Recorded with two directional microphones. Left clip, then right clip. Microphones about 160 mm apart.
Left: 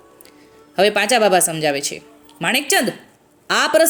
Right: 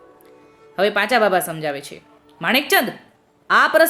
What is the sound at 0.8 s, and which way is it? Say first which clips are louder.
A woman's voice: left 2 dB; 40° left (ahead or behind).